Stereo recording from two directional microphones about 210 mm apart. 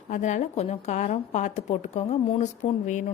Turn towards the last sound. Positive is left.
turn(degrees=30)  # may be behind; listen again after turning